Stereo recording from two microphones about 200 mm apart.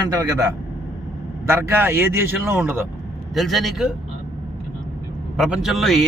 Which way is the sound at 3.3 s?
Centre (ahead or behind).